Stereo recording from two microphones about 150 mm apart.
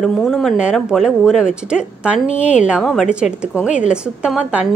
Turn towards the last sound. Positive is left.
turn(degrees=-5)  # may be behind; listen again after turning